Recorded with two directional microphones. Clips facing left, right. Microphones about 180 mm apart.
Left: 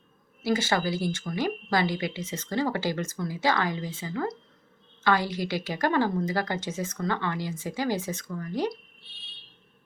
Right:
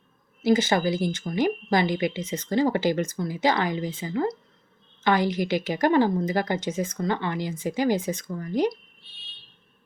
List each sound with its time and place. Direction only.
0.4 s speech: 20° right (ahead or behind)